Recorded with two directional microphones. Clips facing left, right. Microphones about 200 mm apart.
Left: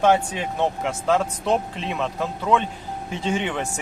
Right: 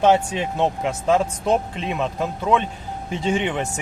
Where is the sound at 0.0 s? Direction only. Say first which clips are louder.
Right 2 dB; 20° right (ahead or behind).